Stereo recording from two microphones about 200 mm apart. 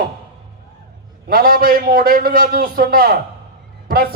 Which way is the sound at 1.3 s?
45° right (ahead or behind).